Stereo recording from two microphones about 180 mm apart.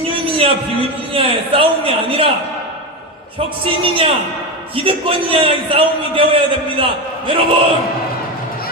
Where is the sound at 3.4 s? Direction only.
30° right (ahead or behind).